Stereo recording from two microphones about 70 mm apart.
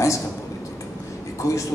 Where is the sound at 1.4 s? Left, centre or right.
Left.